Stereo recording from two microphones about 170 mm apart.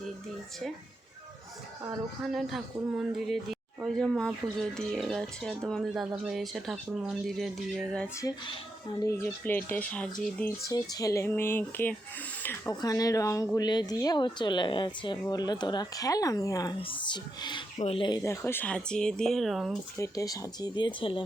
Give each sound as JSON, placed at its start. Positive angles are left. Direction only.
{"t": 2.2, "sound": "speech", "side_deg": 0}
{"t": 8.2, "sound": "speech", "side_deg": 20}
{"t": 10.7, "sound": "speech", "side_deg": 20}
{"t": 16.7, "sound": "speech", "side_deg": 30}
{"t": 18.2, "sound": "speech", "side_deg": 15}
{"t": 20.0, "sound": "speech", "side_deg": 20}